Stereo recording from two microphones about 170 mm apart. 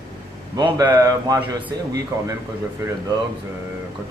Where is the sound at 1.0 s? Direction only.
20° right (ahead or behind).